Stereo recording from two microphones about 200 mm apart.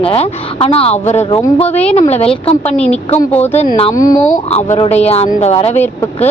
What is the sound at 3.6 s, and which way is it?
Speech, 30° left (ahead or behind).